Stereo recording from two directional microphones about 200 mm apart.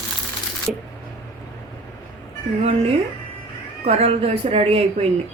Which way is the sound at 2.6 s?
30° right (ahead or behind).